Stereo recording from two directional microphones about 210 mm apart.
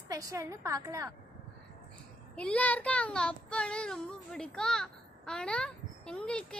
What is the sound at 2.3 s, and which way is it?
Child singing, 5° left (ahead or behind).